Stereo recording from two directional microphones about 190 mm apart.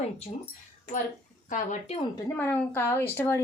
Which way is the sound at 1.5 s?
40° left (ahead or behind).